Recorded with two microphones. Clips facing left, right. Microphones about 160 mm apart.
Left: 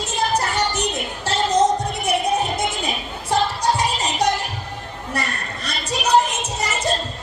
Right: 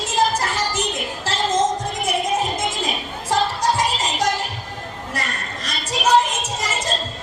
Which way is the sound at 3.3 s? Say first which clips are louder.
Even; 90° right.